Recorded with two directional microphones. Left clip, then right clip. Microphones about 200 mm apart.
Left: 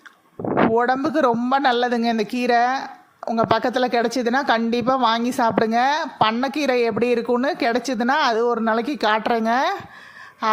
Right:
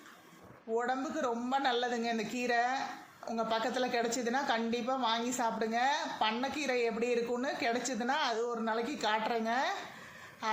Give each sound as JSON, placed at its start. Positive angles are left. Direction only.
{"t": 0.7, "sound": "a woman's voice", "side_deg": 50}